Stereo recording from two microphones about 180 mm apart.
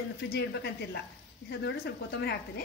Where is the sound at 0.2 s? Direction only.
65° left (ahead or behind).